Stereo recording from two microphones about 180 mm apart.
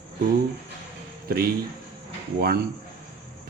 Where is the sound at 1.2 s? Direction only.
55° right (ahead or behind).